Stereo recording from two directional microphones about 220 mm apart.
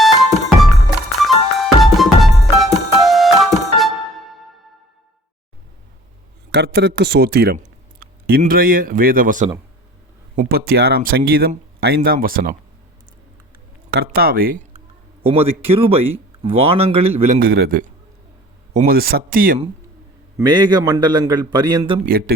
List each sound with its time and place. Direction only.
0.0 s music: centre (ahead or behind)
6.5 s speech: 50° right (ahead or behind)
13.9 s speech: 45° right (ahead or behind)
15.2 s a man's voice: 25° right (ahead or behind)
20.4 s a man's voice: 20° right (ahead or behind)